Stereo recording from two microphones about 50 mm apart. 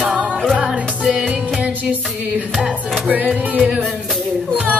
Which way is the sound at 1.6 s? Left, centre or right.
Right.